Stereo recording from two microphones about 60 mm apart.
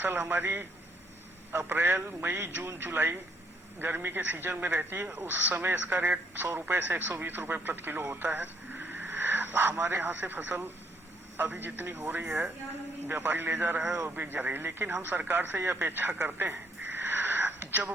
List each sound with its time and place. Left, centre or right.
0.0 s a man's voice: right